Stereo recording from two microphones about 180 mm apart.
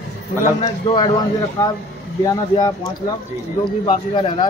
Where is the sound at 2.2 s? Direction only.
20° left (ahead or behind).